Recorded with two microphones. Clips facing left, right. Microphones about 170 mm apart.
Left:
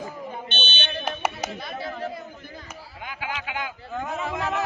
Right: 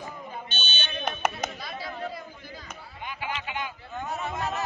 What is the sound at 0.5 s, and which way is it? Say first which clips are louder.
Buzzer: left 5 dB; 55° left (ahead or behind).